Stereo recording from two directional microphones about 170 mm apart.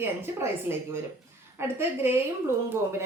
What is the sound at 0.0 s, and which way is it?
Speech, 15° right (ahead or behind).